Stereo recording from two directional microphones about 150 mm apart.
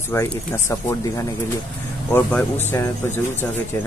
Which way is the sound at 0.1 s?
20° left (ahead or behind).